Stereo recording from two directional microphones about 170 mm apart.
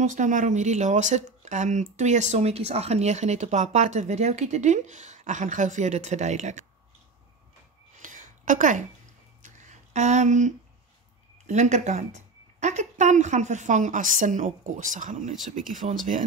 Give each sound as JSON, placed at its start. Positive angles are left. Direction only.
{"t": 0.0, "sound": "speech", "side_deg": -45}
{"t": 8.0, "sound": "a sound", "side_deg": -50}
{"t": 11.4, "sound": "speech", "side_deg": -45}